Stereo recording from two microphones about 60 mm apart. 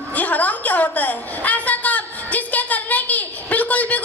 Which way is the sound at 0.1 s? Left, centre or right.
Left.